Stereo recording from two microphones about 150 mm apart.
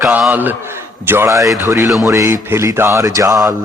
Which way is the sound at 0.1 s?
10° right (ahead or behind).